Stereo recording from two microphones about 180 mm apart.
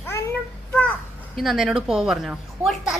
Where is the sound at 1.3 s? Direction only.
Centre (ahead or behind).